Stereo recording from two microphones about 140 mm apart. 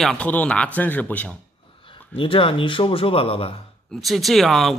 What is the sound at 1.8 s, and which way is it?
Speech, 40° left (ahead or behind).